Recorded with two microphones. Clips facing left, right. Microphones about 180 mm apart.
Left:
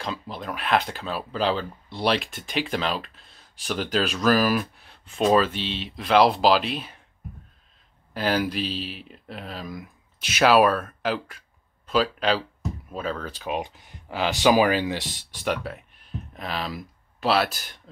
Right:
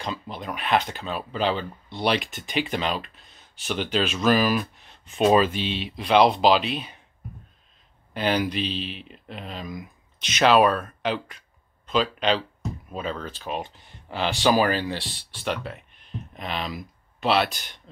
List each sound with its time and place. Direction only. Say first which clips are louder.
0.0 s speech: even; centre (ahead or behind)
5.1 s speech: right 1 dB; 5° right (ahead or behind)
8.1 s speech: even; 5° left (ahead or behind)